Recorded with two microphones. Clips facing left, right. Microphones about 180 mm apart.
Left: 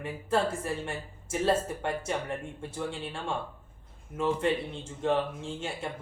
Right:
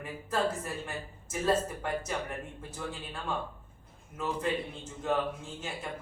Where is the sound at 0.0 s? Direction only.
30° left (ahead or behind).